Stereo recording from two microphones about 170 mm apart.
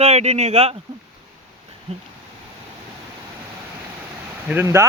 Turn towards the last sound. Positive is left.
turn(degrees=-15)  # may be behind; listen again after turning